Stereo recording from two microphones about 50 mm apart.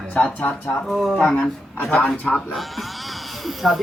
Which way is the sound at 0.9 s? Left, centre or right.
Centre.